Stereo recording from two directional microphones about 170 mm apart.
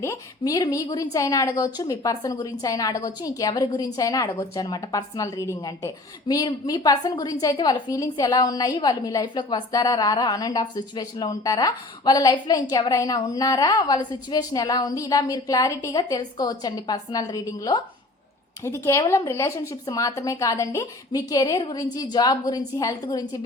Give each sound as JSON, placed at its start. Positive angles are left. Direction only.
{"t": 0.0, "sound": "a woman's voice", "side_deg": 20}